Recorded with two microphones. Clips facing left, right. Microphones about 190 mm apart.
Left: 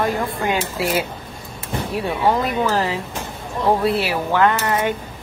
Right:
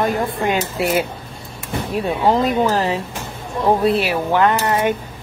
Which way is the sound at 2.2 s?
20° right (ahead or behind).